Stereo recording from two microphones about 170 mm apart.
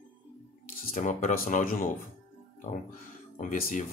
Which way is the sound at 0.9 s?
50° left (ahead or behind).